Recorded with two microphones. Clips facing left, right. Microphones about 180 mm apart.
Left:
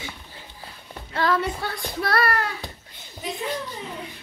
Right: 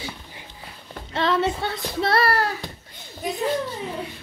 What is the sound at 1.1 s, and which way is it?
A child's voice, 25° right (ahead or behind).